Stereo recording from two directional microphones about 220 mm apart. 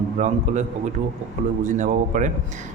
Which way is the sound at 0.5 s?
35° right (ahead or behind).